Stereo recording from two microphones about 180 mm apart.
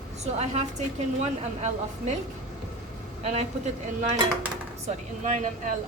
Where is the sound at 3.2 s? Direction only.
35° right (ahead or behind).